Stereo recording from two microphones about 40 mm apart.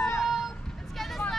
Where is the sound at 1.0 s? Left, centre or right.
Centre.